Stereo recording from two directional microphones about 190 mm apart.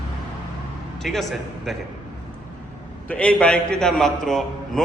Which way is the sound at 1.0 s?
Centre (ahead or behind).